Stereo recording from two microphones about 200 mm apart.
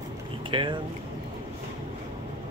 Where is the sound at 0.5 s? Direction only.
25° right (ahead or behind).